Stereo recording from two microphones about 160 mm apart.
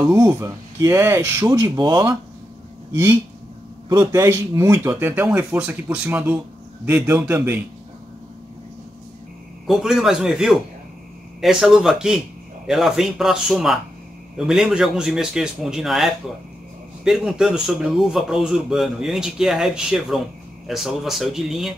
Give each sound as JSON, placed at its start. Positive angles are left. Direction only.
{"t": 0.0, "sound": "speech", "side_deg": -20}
{"t": 9.7, "sound": "a man's voice", "side_deg": 0}